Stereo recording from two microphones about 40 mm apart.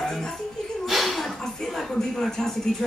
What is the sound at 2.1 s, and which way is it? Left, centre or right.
Speech, centre.